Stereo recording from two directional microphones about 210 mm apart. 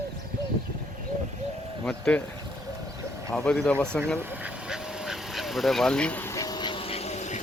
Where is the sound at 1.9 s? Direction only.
5° left (ahead or behind).